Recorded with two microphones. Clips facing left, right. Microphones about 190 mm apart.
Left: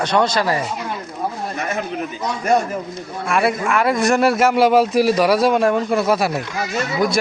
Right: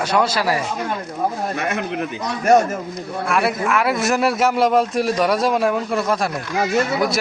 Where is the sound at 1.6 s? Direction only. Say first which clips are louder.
Right 1 dB; 65° right (ahead or behind).